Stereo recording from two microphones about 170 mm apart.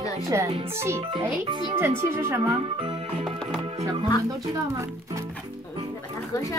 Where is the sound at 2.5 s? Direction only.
30° right (ahead or behind).